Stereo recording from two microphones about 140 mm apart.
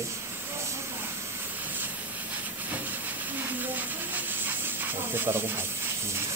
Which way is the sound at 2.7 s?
10° right (ahead or behind).